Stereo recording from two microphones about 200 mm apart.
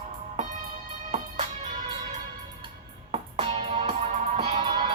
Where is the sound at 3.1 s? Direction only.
30° right (ahead or behind).